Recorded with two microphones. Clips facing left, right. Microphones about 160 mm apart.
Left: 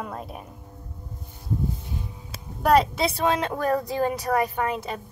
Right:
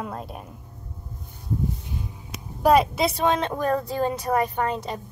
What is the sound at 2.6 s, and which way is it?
Speech, 5° right (ahead or behind).